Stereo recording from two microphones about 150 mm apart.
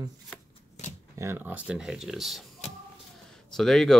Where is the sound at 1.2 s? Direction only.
15° right (ahead or behind).